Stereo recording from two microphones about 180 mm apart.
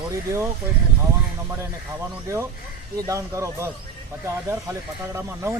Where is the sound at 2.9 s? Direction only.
20° right (ahead or behind).